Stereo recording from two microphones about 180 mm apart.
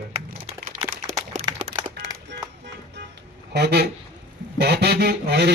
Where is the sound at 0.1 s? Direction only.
40° right (ahead or behind).